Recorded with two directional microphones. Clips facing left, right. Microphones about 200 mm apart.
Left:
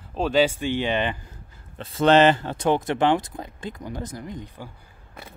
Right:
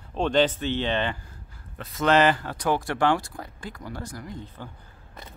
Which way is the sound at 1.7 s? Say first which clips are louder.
Left 4 dB; 30° left (ahead or behind).